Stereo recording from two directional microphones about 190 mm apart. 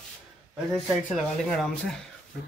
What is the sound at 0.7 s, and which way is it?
Speech, centre (ahead or behind).